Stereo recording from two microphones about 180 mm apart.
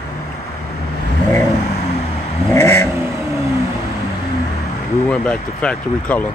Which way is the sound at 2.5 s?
10° left (ahead or behind).